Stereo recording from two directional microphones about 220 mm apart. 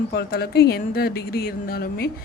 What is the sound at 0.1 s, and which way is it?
Speech, 45° left (ahead or behind).